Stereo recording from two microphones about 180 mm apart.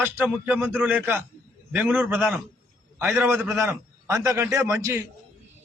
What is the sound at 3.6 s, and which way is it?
A man's voice, 15° right (ahead or behind).